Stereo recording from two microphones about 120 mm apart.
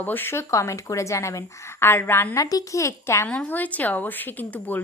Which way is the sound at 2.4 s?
30° left (ahead or behind).